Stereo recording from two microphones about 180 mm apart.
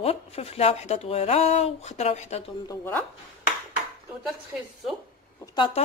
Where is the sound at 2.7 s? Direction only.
15° left (ahead or behind).